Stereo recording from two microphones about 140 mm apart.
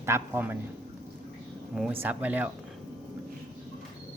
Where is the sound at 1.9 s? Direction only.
15° right (ahead or behind).